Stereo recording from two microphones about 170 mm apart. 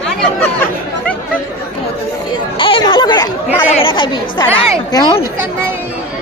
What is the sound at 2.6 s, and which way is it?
Chatter, 30° left (ahead or behind).